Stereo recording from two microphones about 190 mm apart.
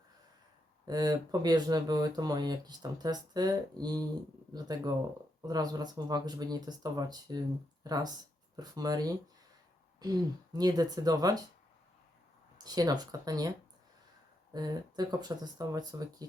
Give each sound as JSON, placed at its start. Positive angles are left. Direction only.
{"t": 0.9, "sound": "speech", "side_deg": -20}
{"t": 12.6, "sound": "speech", "side_deg": -20}
{"t": 14.5, "sound": "speech", "side_deg": -20}